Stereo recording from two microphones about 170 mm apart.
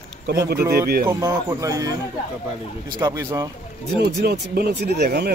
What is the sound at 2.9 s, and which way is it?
Speech, 20° right (ahead or behind).